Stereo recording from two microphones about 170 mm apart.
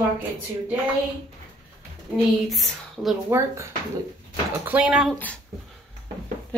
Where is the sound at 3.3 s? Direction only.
15° right (ahead or behind).